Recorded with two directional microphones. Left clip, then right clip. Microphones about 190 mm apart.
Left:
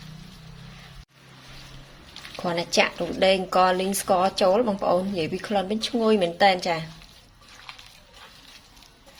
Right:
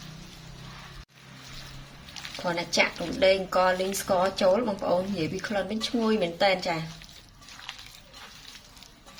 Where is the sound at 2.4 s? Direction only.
40° left (ahead or behind).